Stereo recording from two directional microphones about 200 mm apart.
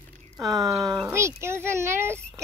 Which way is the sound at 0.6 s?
15° right (ahead or behind).